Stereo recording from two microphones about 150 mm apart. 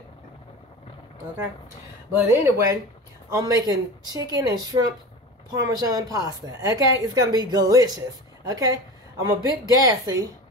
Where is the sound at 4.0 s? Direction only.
25° right (ahead or behind).